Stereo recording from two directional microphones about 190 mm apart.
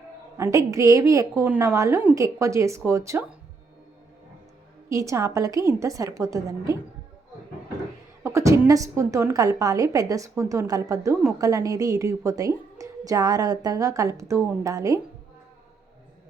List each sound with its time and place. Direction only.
0.3 s a woman's voice: 15° right (ahead or behind)
4.9 s a woman's voice: 15° right (ahead or behind)
8.2 s a woman's voice: 15° right (ahead or behind)